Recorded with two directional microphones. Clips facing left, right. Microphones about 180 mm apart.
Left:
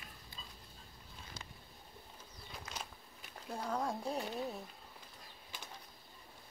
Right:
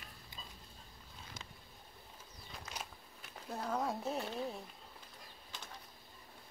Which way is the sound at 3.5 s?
5° right (ahead or behind).